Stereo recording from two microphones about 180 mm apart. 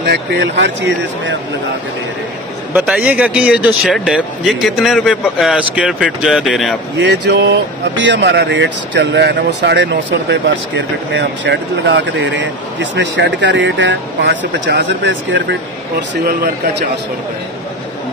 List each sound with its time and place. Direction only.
0.0 s speech: 70° right (ahead or behind)
2.7 s speech: 5° right (ahead or behind)
7.0 s speech: 80° right